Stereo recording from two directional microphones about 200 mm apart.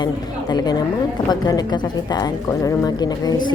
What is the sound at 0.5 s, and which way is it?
Speech, 20° left (ahead or behind).